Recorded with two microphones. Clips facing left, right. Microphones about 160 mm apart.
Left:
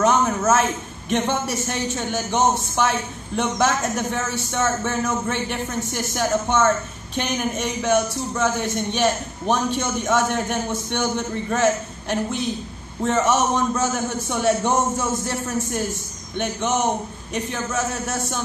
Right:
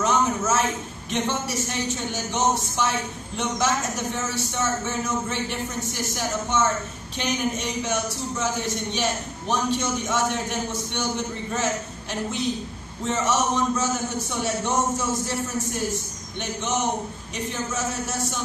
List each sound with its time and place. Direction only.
0.0 s a sound: 55° left (ahead or behind)
1.1 s speech: 55° left (ahead or behind)
17.3 s speech: 55° left (ahead or behind)